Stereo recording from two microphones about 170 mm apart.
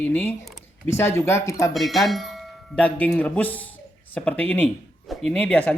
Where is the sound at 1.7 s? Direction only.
Centre (ahead or behind).